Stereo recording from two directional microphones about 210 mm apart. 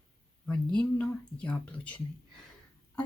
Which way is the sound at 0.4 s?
5° left (ahead or behind).